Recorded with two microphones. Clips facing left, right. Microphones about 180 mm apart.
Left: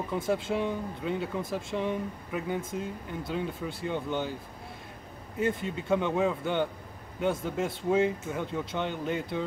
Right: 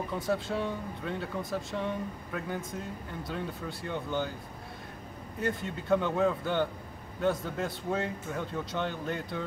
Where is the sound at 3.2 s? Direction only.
25° left (ahead or behind).